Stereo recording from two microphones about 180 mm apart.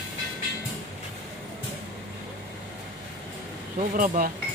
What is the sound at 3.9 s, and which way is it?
Speech, 50° right (ahead or behind).